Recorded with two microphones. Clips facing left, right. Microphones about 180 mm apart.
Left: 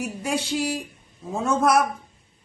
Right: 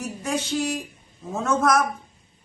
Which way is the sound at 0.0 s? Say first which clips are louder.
Left 1 dB; 10° left (ahead or behind).